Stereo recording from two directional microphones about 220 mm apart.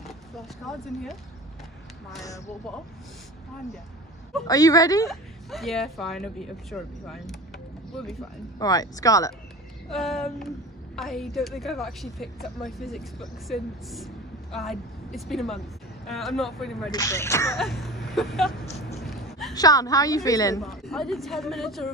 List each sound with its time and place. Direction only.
0.0 s vehicle: centre (ahead or behind)
4.5 s a woman's voice: 15° left (ahead or behind)
5.1 s speech: centre (ahead or behind)
8.5 s a woman's voice: 15° left (ahead or behind)
9.8 s speech: centre (ahead or behind)
16.9 s a woman's voice: 15° left (ahead or behind)
17.6 s speech: centre (ahead or behind)
18.9 s a sound: centre (ahead or behind)
19.5 s a woman's voice: 15° left (ahead or behind)
20.6 s speech: centre (ahead or behind)